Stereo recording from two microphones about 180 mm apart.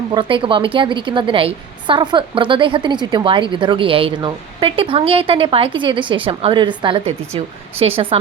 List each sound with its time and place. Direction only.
0.1 s a woman's voice: 25° right (ahead or behind)